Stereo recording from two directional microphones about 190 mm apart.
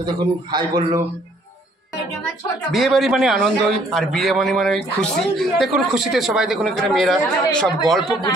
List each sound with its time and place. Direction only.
0.0 s a man's voice: 20° right (ahead or behind)
2.7 s a man's voice: centre (ahead or behind)